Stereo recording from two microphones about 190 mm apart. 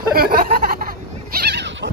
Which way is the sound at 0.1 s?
50° right (ahead or behind).